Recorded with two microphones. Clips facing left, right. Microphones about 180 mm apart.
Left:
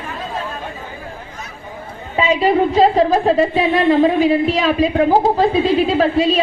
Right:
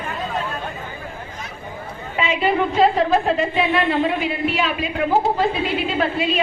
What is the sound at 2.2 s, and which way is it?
A woman's voice, 35° left (ahead or behind).